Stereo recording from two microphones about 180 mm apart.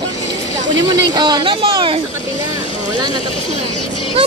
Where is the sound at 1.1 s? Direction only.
25° right (ahead or behind).